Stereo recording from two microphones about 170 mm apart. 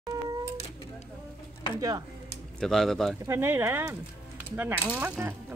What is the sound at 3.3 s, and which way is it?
Coin, 15° right (ahead or behind).